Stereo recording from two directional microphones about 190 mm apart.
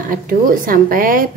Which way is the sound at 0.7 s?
45° right (ahead or behind).